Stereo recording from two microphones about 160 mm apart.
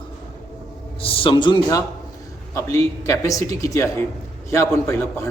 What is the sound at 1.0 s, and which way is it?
A man's voice, 35° left (ahead or behind).